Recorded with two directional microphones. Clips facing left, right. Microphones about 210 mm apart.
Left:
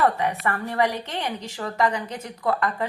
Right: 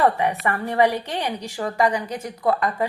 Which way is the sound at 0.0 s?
15° right (ahead or behind).